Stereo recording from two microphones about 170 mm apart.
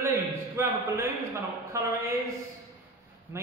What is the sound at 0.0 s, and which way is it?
A man's voice, 15° right (ahead or behind).